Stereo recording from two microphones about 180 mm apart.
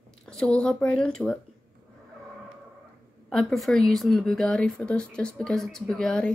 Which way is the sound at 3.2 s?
Centre (ahead or behind).